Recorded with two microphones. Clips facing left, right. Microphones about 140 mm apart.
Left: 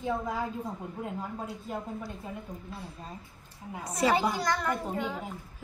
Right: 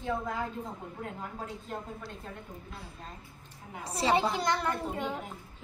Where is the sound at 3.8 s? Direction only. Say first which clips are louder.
Left 1 dB; 30° right (ahead or behind).